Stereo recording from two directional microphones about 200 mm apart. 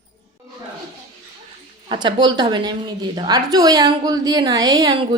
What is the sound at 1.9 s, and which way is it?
A woman's voice, 20° right (ahead or behind).